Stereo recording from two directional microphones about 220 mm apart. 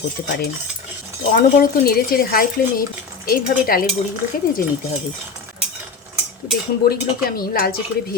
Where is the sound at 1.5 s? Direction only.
40° left (ahead or behind).